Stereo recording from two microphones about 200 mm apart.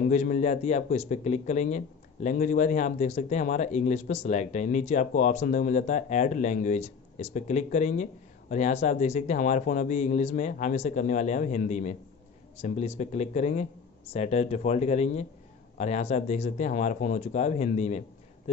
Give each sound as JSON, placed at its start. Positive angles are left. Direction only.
{"t": 0.0, "sound": "speech", "side_deg": 35}